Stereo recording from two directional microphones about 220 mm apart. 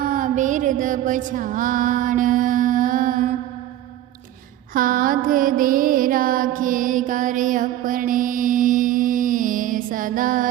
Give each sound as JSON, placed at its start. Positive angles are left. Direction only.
{"t": 0.0, "sound": "music", "side_deg": -35}
{"t": 4.7, "sound": "music", "side_deg": -40}